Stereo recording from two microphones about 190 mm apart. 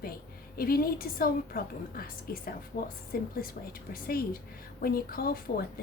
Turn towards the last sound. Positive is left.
turn(degrees=50)  # may be behind; listen again after turning